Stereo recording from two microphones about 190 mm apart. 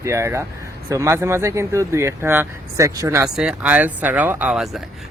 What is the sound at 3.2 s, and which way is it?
Speech, 5° right (ahead or behind).